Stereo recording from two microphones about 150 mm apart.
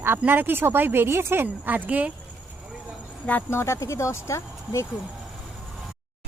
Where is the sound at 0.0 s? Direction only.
15° right (ahead or behind).